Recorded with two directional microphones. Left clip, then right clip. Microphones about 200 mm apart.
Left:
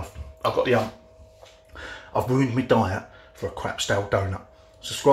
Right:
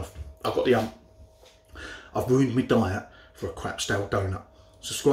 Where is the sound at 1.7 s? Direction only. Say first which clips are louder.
Left 5 dB; 10° right (ahead or behind).